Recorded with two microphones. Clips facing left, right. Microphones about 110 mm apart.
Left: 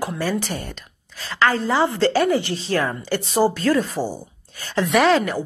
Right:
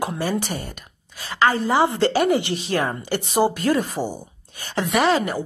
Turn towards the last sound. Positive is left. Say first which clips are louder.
# left 2 dB
turn(degrees=-10)  # may be behind; listen again after turning